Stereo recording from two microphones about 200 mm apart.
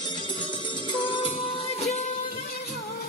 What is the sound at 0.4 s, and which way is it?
Music, 25° left (ahead or behind).